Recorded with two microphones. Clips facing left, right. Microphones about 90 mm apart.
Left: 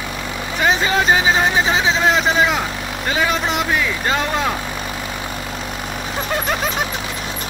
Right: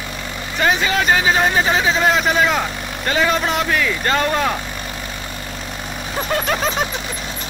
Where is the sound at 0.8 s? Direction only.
20° left (ahead or behind).